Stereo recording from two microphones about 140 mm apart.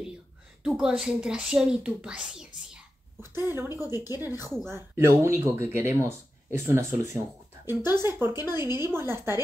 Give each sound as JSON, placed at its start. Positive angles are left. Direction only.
{"t": 0.7, "sound": "speech", "side_deg": -5}
{"t": 3.2, "sound": "speech", "side_deg": -15}